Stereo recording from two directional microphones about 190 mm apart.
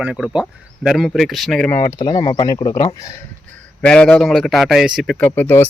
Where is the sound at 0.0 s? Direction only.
5° right (ahead or behind).